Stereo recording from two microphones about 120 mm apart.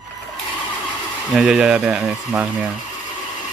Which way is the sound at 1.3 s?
5° right (ahead or behind).